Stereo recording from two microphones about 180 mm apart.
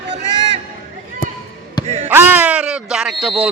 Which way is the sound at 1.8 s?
40° right (ahead or behind).